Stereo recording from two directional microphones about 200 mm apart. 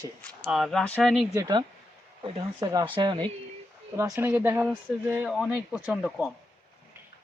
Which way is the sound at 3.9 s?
15° right (ahead or behind).